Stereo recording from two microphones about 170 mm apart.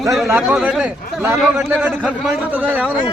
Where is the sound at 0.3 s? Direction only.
10° right (ahead or behind).